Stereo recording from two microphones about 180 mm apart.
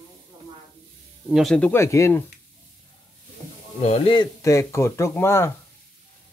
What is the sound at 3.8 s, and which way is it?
Speech, 30° left (ahead or behind).